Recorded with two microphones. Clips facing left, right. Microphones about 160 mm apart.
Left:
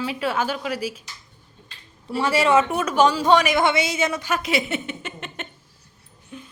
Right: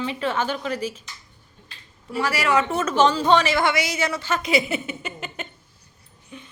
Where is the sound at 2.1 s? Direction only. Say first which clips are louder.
Left 3 dB; 25° left (ahead or behind).